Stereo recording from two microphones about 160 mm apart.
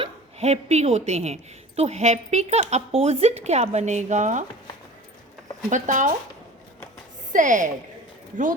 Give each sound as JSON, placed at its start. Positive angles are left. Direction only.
{"t": 0.0, "sound": "a woman's voice", "side_deg": -40}
{"t": 5.7, "sound": "a woman's voice", "side_deg": -50}
{"t": 7.3, "sound": "a woman's voice", "side_deg": -55}